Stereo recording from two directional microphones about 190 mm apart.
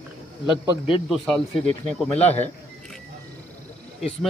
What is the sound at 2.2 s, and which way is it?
Speech, 10° left (ahead or behind).